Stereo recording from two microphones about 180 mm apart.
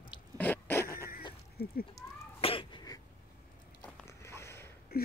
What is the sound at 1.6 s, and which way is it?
Speech, 60° left (ahead or behind).